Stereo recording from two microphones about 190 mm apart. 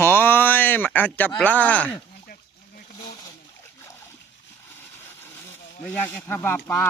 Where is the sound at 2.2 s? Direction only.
50° left (ahead or behind).